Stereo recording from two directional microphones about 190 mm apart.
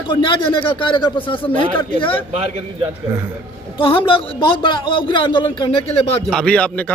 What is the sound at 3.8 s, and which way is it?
A man's voice, 25° left (ahead or behind).